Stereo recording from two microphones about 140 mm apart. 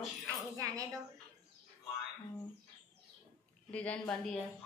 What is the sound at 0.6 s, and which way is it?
Speech, 25° right (ahead or behind).